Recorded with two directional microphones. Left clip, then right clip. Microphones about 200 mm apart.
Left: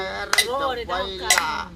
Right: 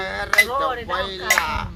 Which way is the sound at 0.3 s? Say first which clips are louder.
Right 4 dB; 60° left (ahead or behind).